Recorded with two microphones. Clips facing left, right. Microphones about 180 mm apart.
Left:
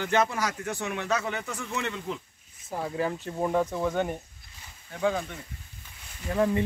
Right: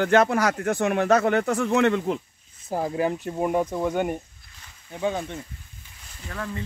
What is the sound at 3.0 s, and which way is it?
Speech, 15° right (ahead or behind).